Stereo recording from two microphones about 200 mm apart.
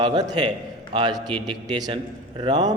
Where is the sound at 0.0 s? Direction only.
20° right (ahead or behind).